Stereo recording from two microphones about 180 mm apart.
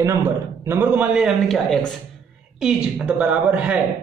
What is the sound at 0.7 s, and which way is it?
A man's voice, 10° right (ahead or behind).